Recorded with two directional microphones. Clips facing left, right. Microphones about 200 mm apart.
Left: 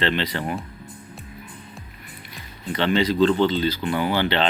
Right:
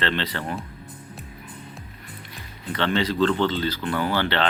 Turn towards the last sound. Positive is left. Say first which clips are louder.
# left 2 dB
turn(degrees=15)  # may be behind; listen again after turning